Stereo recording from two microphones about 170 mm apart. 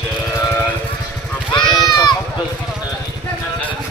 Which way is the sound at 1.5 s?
25° left (ahead or behind).